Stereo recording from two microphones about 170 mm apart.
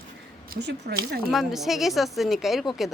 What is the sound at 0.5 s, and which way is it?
Speech, 70° right (ahead or behind).